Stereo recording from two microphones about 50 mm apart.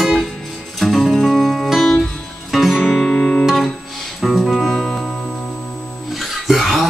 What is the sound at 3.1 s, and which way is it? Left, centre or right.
Music, centre.